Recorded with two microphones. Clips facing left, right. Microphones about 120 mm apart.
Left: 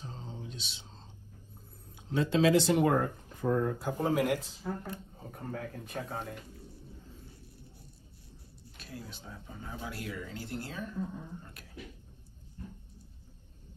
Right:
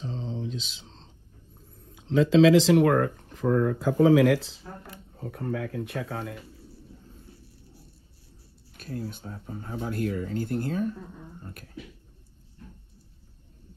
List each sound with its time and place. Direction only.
0.1 s mantra: 90° right
2.0 s speech: 90° right
5.2 s speech: 70° right (ahead or behind)
8.7 s speech: 45° right (ahead or behind)